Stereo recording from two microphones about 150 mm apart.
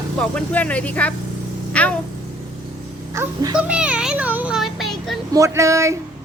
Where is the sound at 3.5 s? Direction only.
5° right (ahead or behind).